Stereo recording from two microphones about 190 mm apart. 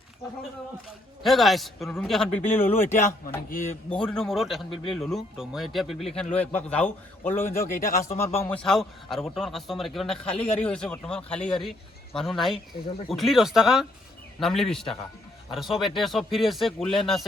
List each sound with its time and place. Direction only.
1.2 s speech: centre (ahead or behind)
3.0 s speech: 45° left (ahead or behind)
3.8 s a man's voice: 5° left (ahead or behind)
7.7 s speech: 50° left (ahead or behind)
8.1 s a man's voice: 35° left (ahead or behind)
8.4 s speech: 5° left (ahead or behind)